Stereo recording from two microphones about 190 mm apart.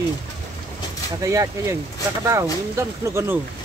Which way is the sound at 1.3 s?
15° right (ahead or behind).